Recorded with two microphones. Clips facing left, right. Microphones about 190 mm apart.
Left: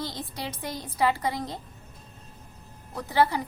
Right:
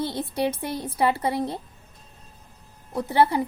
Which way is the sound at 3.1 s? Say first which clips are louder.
Right 3 dB; 25° right (ahead or behind).